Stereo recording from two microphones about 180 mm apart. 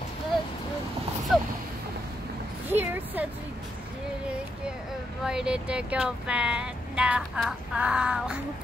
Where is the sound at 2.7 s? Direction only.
10° right (ahead or behind).